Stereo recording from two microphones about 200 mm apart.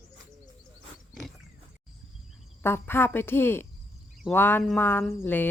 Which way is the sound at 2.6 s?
10° left (ahead or behind).